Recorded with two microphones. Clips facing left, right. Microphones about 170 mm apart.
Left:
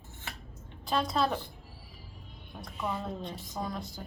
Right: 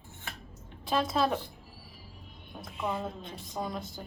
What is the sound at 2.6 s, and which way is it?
Speech, centre (ahead or behind).